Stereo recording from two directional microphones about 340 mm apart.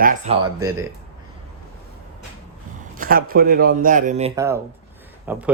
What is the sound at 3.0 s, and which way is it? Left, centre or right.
Speech, right.